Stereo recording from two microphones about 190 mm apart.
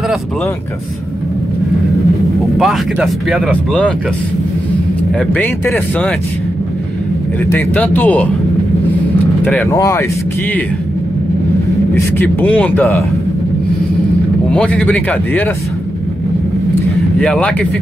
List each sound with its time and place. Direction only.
2.6 s speech: 5° right (ahead or behind)
5.3 s speech: 10° left (ahead or behind)
7.5 s speech: 10° left (ahead or behind)
9.4 s speech: 5° left (ahead or behind)
9.7 s speech: 20° left (ahead or behind)
12.2 s speech: 10° left (ahead or behind)
14.5 s speech: 5° left (ahead or behind)
17.2 s speech: 5° left (ahead or behind)